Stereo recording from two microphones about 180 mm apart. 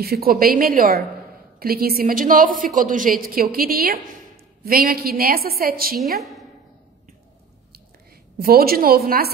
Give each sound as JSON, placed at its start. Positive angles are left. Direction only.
{"t": 0.0, "sound": "a woman's voice", "side_deg": -55}
{"t": 6.1, "sound": "a woman's voice", "side_deg": 0}
{"t": 8.4, "sound": "a woman's voice", "side_deg": -55}